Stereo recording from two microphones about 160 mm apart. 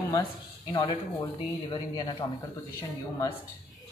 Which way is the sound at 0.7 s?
30° left (ahead or behind).